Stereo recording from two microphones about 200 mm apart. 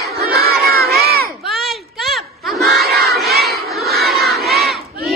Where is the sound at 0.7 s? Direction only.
50° right (ahead or behind).